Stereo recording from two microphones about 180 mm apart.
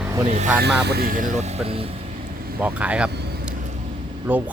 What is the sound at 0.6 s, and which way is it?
Speech, 65° right (ahead or behind).